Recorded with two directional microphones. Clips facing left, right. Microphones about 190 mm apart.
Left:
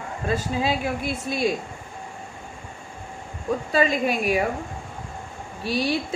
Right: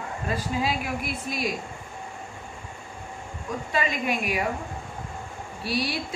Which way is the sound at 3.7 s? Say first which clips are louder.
Left 5 dB; 30° left (ahead or behind).